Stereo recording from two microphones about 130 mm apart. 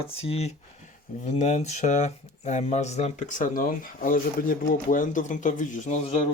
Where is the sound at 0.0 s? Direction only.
50° left (ahead or behind).